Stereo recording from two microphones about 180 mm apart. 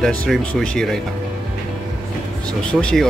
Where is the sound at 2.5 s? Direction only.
5° left (ahead or behind).